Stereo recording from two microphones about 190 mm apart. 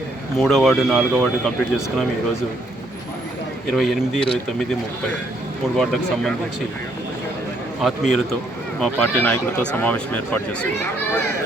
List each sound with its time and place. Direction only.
0.3 s speech: centre (ahead or behind)
3.8 s speech: centre (ahead or behind)
5.7 s speech: centre (ahead or behind)
7.8 s speech: centre (ahead or behind)